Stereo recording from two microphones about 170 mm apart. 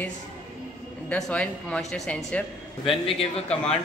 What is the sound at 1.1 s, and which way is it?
A man's voice, 5° left (ahead or behind).